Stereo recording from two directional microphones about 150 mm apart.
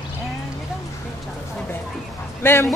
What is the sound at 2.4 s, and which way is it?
Speech, 15° left (ahead or behind).